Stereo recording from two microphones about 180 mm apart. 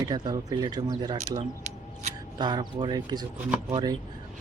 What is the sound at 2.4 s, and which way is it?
Speech, 25° right (ahead or behind).